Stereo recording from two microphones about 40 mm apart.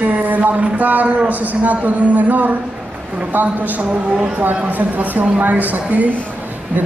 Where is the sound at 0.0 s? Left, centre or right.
Right.